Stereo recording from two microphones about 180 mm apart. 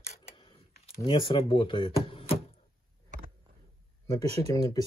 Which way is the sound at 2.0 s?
30° left (ahead or behind).